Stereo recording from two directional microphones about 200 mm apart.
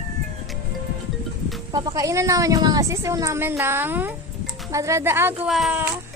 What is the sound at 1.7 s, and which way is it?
A woman's voice, 20° right (ahead or behind).